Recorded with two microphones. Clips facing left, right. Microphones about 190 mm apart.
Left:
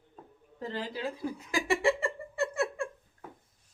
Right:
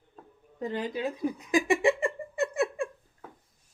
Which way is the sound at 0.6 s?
20° right (ahead or behind).